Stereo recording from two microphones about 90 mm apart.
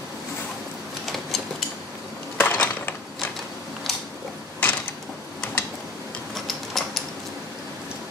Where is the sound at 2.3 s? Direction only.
20° left (ahead or behind).